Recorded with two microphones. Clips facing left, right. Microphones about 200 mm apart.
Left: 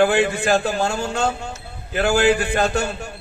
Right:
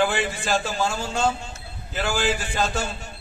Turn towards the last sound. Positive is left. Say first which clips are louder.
# left 5 dB
turn(degrees=65)  # may be behind; listen again after turning